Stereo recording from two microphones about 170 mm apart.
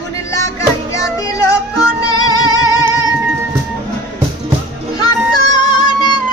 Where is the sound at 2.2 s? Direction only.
25° left (ahead or behind).